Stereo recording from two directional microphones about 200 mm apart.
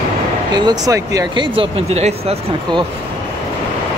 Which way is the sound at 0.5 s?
20° right (ahead or behind).